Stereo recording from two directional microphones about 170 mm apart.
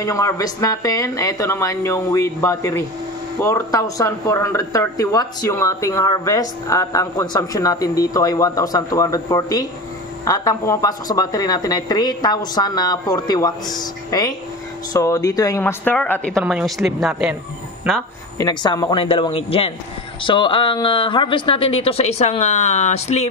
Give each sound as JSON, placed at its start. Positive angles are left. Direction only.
{"t": 0.0, "sound": "speech", "side_deg": 20}
{"t": 18.4, "sound": "speech", "side_deg": 25}